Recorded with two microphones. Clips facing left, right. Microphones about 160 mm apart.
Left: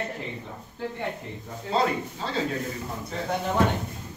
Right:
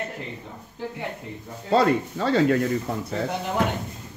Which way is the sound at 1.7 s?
70° right (ahead or behind).